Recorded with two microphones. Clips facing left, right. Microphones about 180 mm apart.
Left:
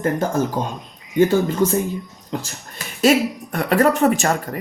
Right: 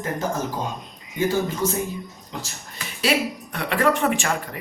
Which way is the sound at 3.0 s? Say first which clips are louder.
Left 7 dB; 45° left (ahead or behind).